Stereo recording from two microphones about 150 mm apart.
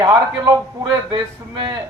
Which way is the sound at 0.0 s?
25° right (ahead or behind).